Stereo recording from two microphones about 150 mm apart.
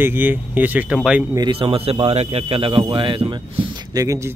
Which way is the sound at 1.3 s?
30° right (ahead or behind).